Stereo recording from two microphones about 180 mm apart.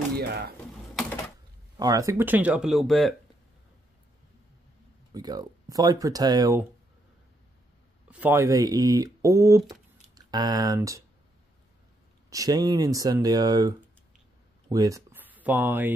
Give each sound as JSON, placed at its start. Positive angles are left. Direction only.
{"t": 0.1, "sound": "speech", "side_deg": -60}
{"t": 1.8, "sound": "speech", "side_deg": -20}
{"t": 5.1, "sound": "speech", "side_deg": -20}
{"t": 8.1, "sound": "speech", "side_deg": -10}
{"t": 12.3, "sound": "speech", "side_deg": -20}